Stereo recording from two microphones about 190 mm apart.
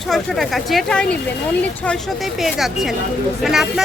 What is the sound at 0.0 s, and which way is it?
Speech, centre (ahead or behind).